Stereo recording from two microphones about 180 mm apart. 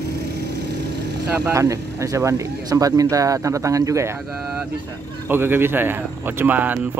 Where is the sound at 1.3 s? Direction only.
10° right (ahead or behind).